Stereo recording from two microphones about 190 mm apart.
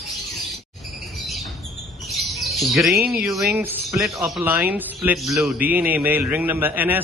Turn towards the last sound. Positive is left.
turn(degrees=-10)  # may be behind; listen again after turning